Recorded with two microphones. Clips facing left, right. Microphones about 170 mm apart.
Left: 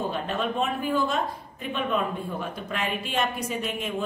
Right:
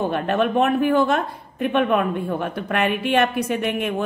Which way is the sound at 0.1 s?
60° right (ahead or behind).